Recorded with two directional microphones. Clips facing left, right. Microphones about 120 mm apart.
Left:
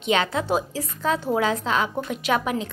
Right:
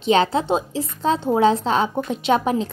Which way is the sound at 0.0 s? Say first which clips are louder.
Right 5 dB; 30° right (ahead or behind).